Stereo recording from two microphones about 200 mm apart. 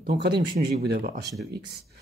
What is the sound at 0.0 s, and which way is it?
Speech, 50° right (ahead or behind).